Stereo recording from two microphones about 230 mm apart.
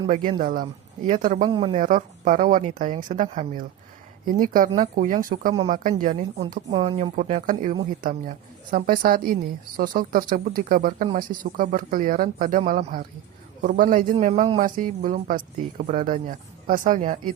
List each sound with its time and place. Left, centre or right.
0.1 s a woman's voice: right
1.5 s speech: right
1.8 s a woman's voice: right